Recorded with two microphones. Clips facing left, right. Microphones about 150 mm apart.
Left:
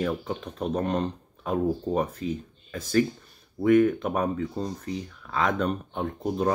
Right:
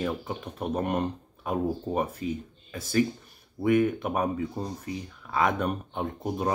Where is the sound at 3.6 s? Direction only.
10° right (ahead or behind).